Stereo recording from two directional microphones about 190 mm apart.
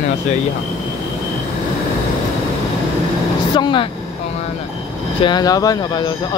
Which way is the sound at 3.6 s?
25° left (ahead or behind).